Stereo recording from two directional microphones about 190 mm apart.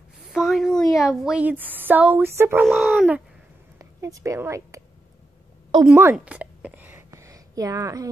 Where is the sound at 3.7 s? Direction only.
15° right (ahead or behind).